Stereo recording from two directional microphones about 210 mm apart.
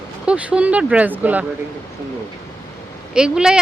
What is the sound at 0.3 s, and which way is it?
Speech, 5° right (ahead or behind).